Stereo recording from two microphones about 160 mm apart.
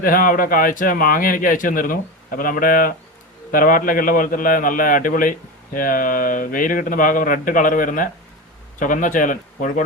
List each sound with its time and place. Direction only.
0.0 s a man's voice: 60° left (ahead or behind)